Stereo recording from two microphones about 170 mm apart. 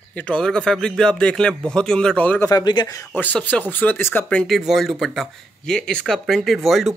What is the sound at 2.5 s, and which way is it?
Speech, 25° left (ahead or behind).